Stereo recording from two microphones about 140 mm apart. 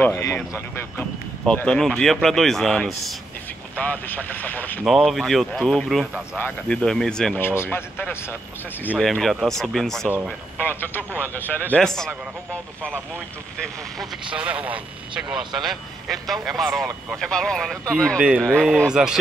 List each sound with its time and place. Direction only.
0.0 s speech: 20° left (ahead or behind)
4.8 s speech: centre (ahead or behind)
7.4 s speech: 15° left (ahead or behind)
8.9 s speech: centre (ahead or behind)
10.6 s speech: 15° left (ahead or behind)
14.2 s speech: 10° right (ahead or behind)
18.2 s speech: 5° right (ahead or behind)
18.5 s speech: 5° left (ahead or behind)